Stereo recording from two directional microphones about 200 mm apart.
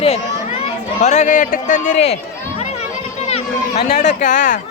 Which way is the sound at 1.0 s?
35° left (ahead or behind).